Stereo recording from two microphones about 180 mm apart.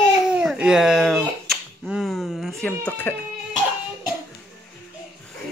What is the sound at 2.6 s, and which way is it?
Speech, 10° left (ahead or behind).